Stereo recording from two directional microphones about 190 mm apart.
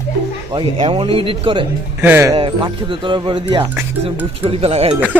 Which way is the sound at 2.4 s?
25° right (ahead or behind).